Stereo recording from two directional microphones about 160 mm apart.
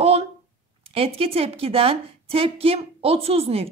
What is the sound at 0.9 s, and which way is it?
A woman's voice, 35° right (ahead or behind).